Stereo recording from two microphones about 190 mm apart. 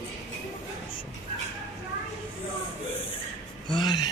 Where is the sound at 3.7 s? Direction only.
20° left (ahead or behind).